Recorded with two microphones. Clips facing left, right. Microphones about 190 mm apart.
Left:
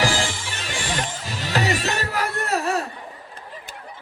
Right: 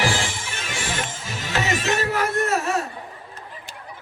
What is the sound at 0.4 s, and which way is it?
Music, 35° left (ahead or behind).